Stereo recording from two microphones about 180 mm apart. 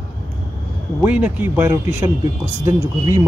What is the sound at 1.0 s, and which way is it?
Speech, 10° right (ahead or behind).